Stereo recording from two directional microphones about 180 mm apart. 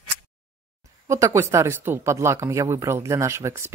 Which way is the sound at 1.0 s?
15° right (ahead or behind).